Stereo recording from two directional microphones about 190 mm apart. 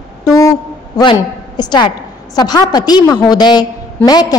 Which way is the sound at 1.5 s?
20° left (ahead or behind).